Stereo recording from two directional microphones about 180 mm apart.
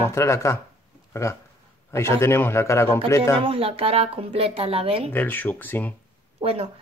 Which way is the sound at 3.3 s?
30° right (ahead or behind).